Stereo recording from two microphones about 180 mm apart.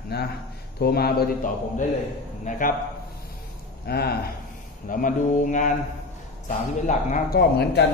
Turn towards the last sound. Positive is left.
turn(degrees=65)  # may be behind; listen again after turning